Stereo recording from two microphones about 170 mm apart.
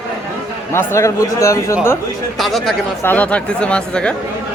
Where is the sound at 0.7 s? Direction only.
15° left (ahead or behind).